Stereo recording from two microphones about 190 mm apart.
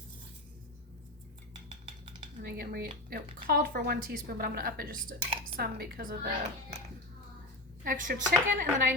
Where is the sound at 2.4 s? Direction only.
55° right (ahead or behind).